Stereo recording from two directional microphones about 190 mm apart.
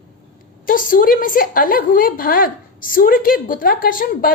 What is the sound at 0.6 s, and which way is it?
A woman's voice, 45° left (ahead or behind).